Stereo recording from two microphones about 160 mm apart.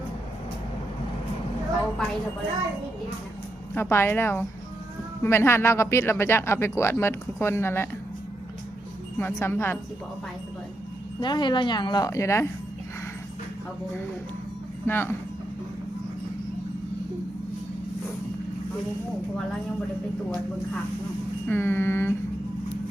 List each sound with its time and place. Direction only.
3.8 s speech: 15° left (ahead or behind)
9.1 s speech: 15° left (ahead or behind)
11.2 s a woman's voice: 30° left (ahead or behind)
14.8 s speech: 15° left (ahead or behind)
21.4 s speech: 15° left (ahead or behind)